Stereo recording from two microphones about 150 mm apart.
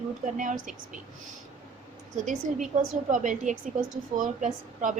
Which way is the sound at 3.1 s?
55° right (ahead or behind).